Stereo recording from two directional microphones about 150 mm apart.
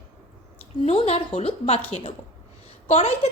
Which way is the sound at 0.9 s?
45° left (ahead or behind).